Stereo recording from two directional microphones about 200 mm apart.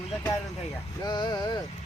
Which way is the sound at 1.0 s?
20° left (ahead or behind).